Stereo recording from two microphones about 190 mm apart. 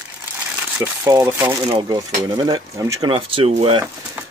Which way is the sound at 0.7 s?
15° right (ahead or behind).